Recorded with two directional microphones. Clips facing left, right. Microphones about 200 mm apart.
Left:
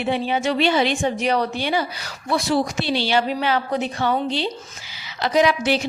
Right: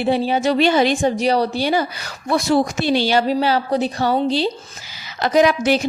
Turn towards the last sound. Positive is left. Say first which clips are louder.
# right 3 dB
turn(degrees=-45)  # may be behind; listen again after turning